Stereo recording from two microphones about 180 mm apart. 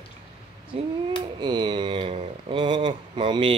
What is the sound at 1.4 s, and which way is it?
Speech, 25° right (ahead or behind).